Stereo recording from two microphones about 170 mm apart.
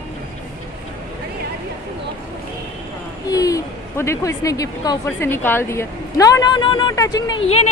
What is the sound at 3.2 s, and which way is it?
Speech, 20° left (ahead or behind).